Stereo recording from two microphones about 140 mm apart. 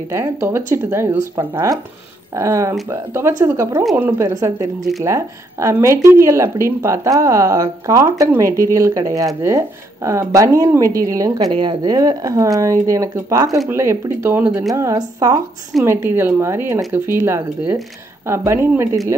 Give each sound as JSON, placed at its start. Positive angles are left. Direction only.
{"t": 0.1, "sound": "speech", "side_deg": -20}